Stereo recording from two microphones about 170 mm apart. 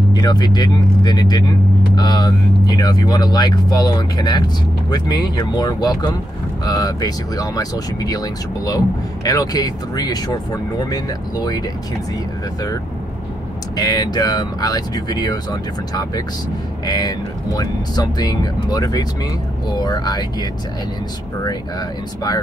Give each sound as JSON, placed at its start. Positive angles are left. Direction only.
{"t": 0.1, "sound": "speech", "side_deg": 25}
{"t": 13.7, "sound": "speech", "side_deg": 25}
{"t": 16.8, "sound": "speech", "side_deg": 25}
{"t": 21.5, "sound": "speech", "side_deg": 25}